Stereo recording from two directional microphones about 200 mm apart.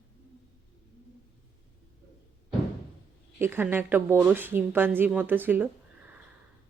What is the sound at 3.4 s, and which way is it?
A woman's voice, 10° right (ahead or behind).